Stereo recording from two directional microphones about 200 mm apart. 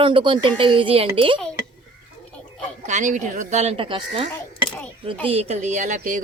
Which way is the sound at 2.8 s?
35° right (ahead or behind).